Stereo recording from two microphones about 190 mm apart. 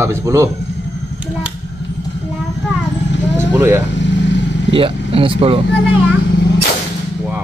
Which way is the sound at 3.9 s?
70° left (ahead or behind).